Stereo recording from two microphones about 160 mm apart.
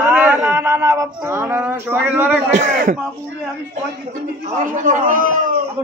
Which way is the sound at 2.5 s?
50° right (ahead or behind).